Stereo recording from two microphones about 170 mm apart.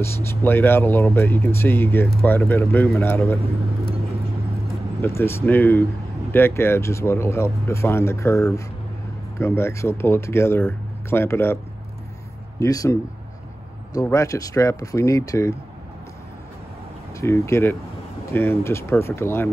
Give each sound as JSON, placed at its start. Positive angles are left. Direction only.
{"t": 0.0, "sound": "speech", "side_deg": 15}
{"t": 5.0, "sound": "speech", "side_deg": 15}
{"t": 12.5, "sound": "speech", "side_deg": 20}
{"t": 14.0, "sound": "speech", "side_deg": 15}
{"t": 17.1, "sound": "speech", "side_deg": 15}